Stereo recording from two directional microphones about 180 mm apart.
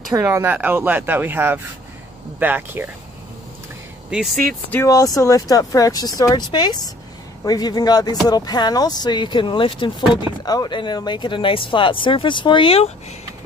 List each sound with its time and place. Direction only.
0.1 s speech: 15° right (ahead or behind)
4.1 s speech: centre (ahead or behind)
4.5 s speech: 10° left (ahead or behind); by 12.9 s 30° left (ahead or behind)